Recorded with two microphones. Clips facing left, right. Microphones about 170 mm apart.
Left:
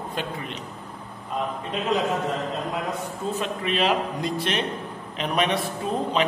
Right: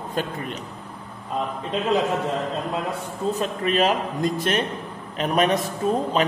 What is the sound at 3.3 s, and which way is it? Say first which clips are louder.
A man's voice: right 4 dB; 40° right (ahead or behind).